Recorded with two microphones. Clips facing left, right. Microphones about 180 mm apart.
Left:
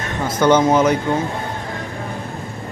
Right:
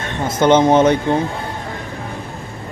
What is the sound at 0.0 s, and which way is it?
Speech, 25° right (ahead or behind).